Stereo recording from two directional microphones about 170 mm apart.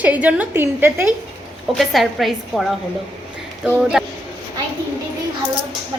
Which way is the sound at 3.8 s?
5° right (ahead or behind).